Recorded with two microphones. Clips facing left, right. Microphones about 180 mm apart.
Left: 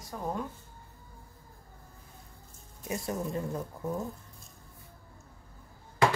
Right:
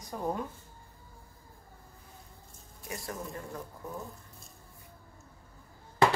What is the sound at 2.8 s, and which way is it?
Speech, 25° left (ahead or behind).